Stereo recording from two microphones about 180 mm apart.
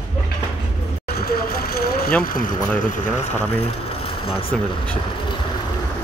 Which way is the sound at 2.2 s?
50° left (ahead or behind).